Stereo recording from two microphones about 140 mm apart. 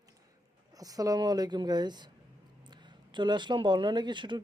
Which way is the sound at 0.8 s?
25° right (ahead or behind).